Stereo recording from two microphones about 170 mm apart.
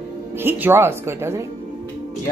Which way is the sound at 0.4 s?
10° right (ahead or behind).